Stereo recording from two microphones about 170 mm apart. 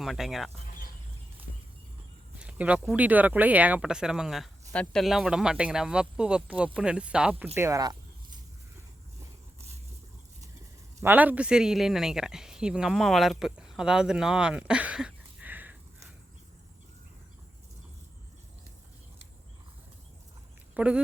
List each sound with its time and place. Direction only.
0.0 s speech: centre (ahead or behind)
2.4 s speech: 5° right (ahead or behind)
7.5 s speech: 15° right (ahead or behind)
11.0 s speech: 10° right (ahead or behind)
20.7 s speech: 5° right (ahead or behind)